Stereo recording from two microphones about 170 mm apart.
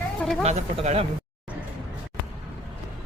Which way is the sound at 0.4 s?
40° right (ahead or behind).